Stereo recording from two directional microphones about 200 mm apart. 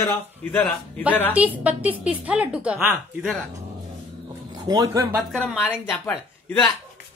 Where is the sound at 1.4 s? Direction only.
5° right (ahead or behind).